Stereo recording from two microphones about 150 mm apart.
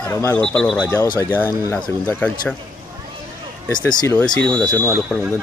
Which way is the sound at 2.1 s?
10° left (ahead or behind).